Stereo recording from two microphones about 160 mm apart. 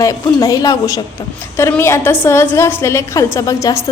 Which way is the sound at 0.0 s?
20° left (ahead or behind).